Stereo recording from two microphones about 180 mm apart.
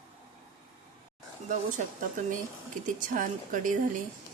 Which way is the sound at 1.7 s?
45° right (ahead or behind).